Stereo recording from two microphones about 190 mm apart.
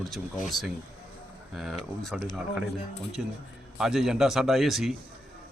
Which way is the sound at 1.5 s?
Centre (ahead or behind).